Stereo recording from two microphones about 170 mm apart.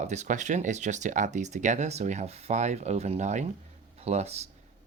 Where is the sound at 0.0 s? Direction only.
45° right (ahead or behind).